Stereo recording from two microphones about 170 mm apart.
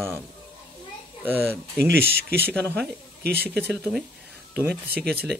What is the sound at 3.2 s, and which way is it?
Speech, 70° right (ahead or behind).